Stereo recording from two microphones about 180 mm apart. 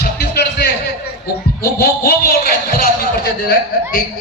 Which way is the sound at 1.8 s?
55° left (ahead or behind).